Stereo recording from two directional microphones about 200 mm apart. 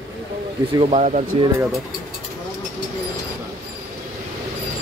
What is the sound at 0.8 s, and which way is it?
Speech, 35° right (ahead or behind).